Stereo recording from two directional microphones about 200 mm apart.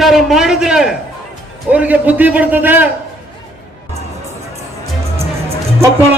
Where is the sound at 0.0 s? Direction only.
Centre (ahead or behind).